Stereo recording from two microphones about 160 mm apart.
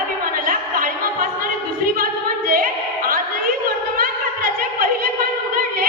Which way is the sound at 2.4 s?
65° right (ahead or behind).